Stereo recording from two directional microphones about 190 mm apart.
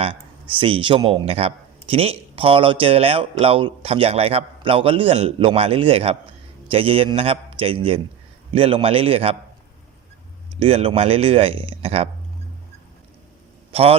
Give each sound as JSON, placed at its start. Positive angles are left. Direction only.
{"t": 0.0, "sound": "speech", "side_deg": -25}
{"t": 10.5, "sound": "speech", "side_deg": -30}